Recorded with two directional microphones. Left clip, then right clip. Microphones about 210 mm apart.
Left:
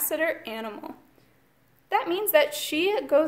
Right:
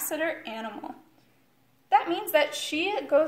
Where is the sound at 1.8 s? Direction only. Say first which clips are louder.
Right 2 dB; 50° left (ahead or behind).